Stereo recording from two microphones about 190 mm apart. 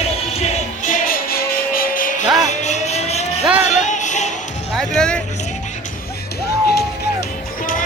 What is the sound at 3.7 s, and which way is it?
Music, 40° left (ahead or behind).